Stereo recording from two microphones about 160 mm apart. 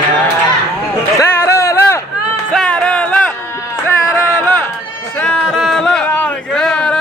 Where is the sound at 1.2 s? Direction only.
15° left (ahead or behind).